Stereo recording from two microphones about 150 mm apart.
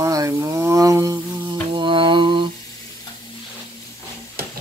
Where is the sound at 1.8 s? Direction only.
35° right (ahead or behind).